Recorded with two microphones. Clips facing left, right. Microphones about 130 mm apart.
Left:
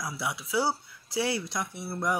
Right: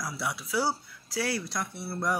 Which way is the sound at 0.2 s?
15° left (ahead or behind).